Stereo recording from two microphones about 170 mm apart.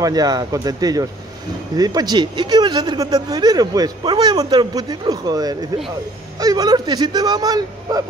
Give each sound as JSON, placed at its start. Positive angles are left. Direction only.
{"t": 0.0, "sound": "speech", "side_deg": -20}